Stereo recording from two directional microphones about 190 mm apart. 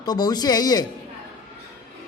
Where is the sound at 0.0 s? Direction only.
20° left (ahead or behind).